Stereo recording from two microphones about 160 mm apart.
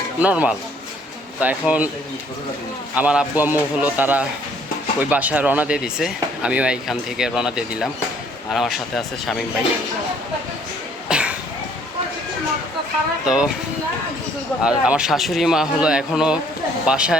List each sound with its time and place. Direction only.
0.2 s a man's voice: 10° right (ahead or behind)
2.9 s a man's voice: 10° right (ahead or behind)
11.1 s a sound: 5° right (ahead or behind)
13.2 s speech: 5° right (ahead or behind)
14.6 s speech: 5° right (ahead or behind)